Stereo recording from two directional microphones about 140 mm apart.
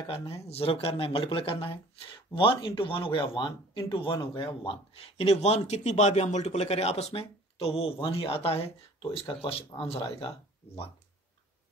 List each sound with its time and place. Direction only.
0.5 s speech: 45° left (ahead or behind)